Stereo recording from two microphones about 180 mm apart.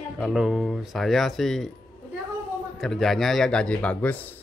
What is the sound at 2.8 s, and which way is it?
Speech, centre (ahead or behind).